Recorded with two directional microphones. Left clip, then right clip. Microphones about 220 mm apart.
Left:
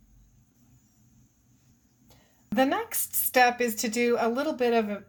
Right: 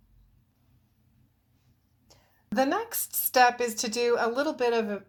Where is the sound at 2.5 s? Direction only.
Centre (ahead or behind).